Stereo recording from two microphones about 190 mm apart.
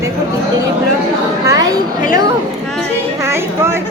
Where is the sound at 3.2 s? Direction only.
15° right (ahead or behind).